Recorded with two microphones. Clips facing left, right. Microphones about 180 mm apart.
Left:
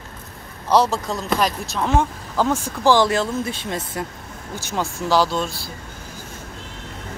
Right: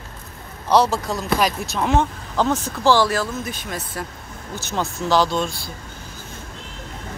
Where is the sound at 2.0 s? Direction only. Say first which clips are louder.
Left 2 dB; 10° left (ahead or behind); by 4.0 s 25° left (ahead or behind).